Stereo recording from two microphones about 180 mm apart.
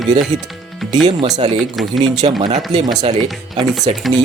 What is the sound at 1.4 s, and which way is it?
Speech, 30° right (ahead or behind).